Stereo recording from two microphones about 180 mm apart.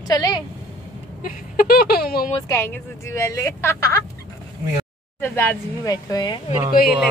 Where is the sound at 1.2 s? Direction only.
55° left (ahead or behind).